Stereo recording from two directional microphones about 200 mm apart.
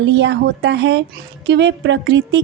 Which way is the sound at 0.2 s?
60° right (ahead or behind).